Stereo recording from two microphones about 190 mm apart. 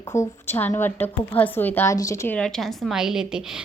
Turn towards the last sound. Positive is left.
turn(degrees=-5)  # may be behind; listen again after turning